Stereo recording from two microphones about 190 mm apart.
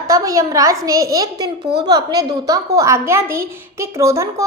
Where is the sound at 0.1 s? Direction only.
20° right (ahead or behind).